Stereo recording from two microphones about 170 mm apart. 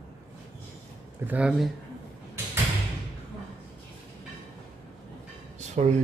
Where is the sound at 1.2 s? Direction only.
10° right (ahead or behind).